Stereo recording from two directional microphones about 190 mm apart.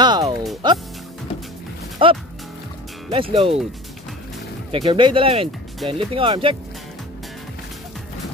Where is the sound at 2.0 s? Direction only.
25° right (ahead or behind).